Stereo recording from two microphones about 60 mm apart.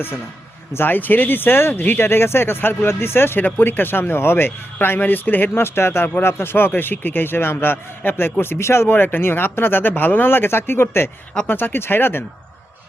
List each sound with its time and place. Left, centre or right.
0.7 s a man's voice: left